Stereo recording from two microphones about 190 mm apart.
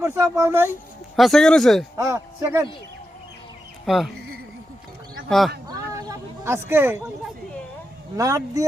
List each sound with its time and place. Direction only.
0.0 s speech: 15° right (ahead or behind)
1.1 s speech: centre (ahead or behind)
2.0 s speech: 15° right (ahead or behind)
3.8 s speech: centre (ahead or behind)
5.6 s a sound: 15° right (ahead or behind)
8.1 s speech: 20° right (ahead or behind)